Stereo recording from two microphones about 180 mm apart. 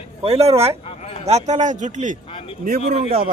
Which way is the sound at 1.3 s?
40° right (ahead or behind).